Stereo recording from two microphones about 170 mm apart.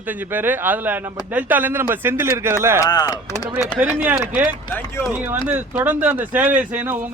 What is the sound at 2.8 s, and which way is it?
Speech, 20° left (ahead or behind).